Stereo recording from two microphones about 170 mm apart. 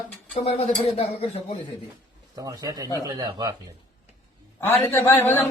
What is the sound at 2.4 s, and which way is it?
Speech, 25° right (ahead or behind).